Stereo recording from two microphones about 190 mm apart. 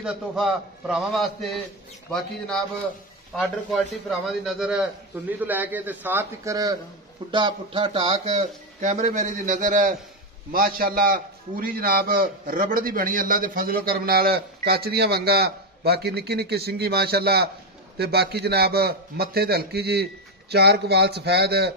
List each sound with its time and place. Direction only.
0.0 s a man's voice: 5° right (ahead or behind); by 21.7 s 60° right (ahead or behind)